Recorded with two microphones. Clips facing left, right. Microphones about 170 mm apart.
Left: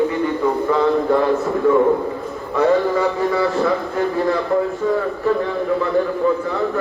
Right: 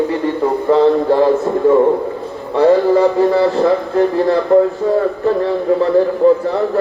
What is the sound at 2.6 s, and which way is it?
A man's voice, 35° right (ahead or behind).